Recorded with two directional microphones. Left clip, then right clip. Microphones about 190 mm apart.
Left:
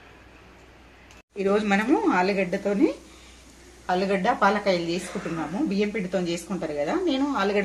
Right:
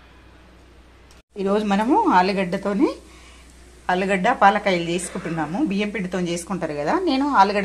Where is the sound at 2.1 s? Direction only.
40° right (ahead or behind).